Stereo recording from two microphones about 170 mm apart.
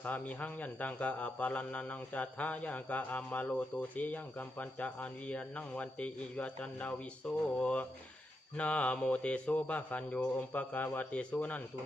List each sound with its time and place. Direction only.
0.0 s speech: 10° left (ahead or behind)